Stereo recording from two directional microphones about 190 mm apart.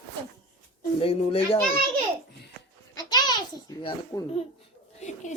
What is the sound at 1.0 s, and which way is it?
Speech, 30° left (ahead or behind).